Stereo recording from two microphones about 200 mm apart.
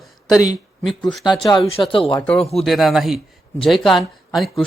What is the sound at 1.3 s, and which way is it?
Speech, 25° left (ahead or behind).